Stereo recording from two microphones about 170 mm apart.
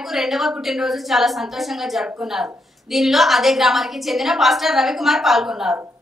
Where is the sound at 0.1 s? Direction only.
Centre (ahead or behind).